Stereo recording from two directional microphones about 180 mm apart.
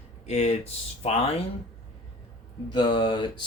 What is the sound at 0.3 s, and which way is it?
Speech, 35° left (ahead or behind).